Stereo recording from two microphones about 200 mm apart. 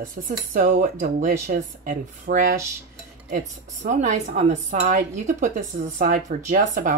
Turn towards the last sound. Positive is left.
turn(degrees=-40)  # may be behind; listen again after turning